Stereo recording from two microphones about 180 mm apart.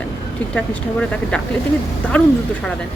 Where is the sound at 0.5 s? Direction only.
5° left (ahead or behind).